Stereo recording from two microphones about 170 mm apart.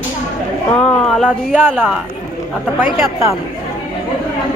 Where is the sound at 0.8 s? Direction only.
5° left (ahead or behind).